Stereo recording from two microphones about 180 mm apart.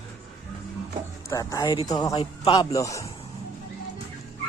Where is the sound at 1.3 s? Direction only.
15° left (ahead or behind).